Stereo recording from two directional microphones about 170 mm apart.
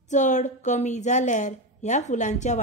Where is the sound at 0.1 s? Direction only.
45° left (ahead or behind).